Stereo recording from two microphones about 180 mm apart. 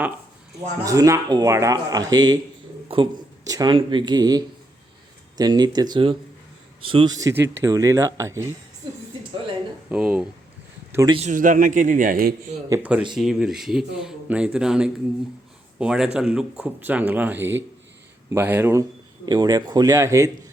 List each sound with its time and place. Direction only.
0.8 s speech: 20° right (ahead or behind)
9.9 s speech: 5° right (ahead or behind)
10.9 s speech: 20° right (ahead or behind)
11.2 s a man's voice: 45° right (ahead or behind)
12.6 s speech: 10° right (ahead or behind)